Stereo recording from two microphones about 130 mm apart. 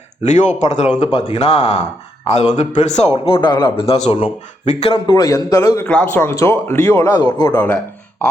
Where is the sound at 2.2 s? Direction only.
55° left (ahead or behind).